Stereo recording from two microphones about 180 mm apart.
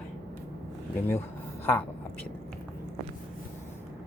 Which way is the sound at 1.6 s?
10° left (ahead or behind).